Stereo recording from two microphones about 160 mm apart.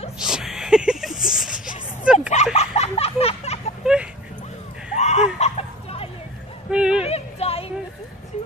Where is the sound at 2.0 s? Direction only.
5° right (ahead or behind).